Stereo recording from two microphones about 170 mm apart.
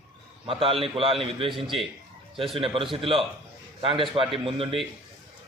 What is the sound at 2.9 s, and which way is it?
A man's voice, 30° right (ahead or behind).